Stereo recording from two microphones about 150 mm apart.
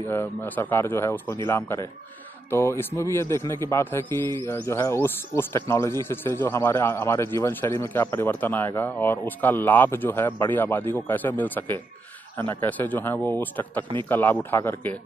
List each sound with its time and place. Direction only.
0.0 s speech: 15° left (ahead or behind)